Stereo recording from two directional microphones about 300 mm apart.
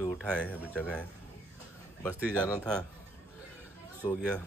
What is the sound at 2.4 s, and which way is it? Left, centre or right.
Speech, centre.